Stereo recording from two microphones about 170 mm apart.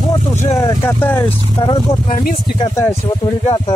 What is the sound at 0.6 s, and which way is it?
Speech, 15° left (ahead or behind).